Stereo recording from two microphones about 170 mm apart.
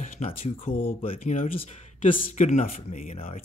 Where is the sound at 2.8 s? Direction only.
55° left (ahead or behind).